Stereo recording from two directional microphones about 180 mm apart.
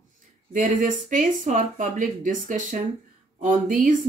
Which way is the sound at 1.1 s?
45° right (ahead or behind).